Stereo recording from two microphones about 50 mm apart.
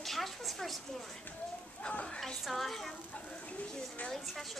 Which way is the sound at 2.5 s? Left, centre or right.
Centre.